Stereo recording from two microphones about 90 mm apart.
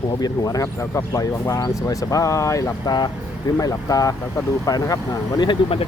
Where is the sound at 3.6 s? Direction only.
40° left (ahead or behind).